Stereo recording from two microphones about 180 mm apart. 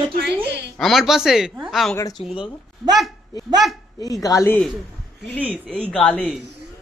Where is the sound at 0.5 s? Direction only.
70° right (ahead or behind).